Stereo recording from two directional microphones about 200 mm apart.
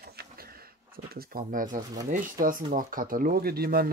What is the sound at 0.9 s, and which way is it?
Speech, 50° right (ahead or behind).